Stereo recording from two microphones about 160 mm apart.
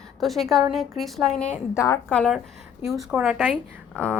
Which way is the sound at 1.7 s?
20° left (ahead or behind).